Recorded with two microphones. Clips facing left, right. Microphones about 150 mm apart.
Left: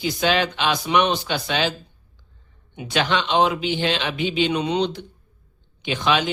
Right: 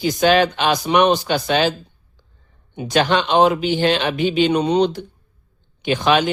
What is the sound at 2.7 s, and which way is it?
Speech, 40° right (ahead or behind).